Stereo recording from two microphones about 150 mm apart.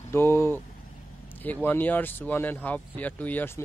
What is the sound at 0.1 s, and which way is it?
Vehicle, 15° left (ahead or behind).